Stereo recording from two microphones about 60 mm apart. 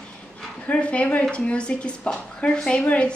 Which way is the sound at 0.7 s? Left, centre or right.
Left.